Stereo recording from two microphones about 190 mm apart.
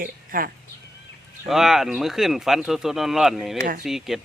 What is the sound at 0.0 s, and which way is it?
Speech, 50° right (ahead or behind).